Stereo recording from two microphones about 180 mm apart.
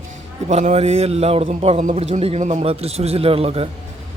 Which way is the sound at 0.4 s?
40° right (ahead or behind).